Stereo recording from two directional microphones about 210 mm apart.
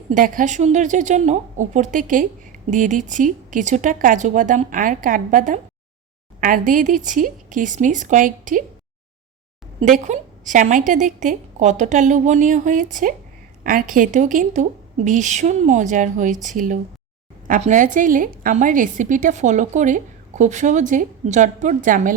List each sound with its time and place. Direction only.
0.1 s a woman's voice: 40° right (ahead or behind)
9.8 s a woman's voice: 35° right (ahead or behind)